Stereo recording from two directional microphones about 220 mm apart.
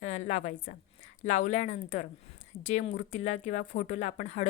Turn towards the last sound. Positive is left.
turn(degrees=35)  # may be behind; listen again after turning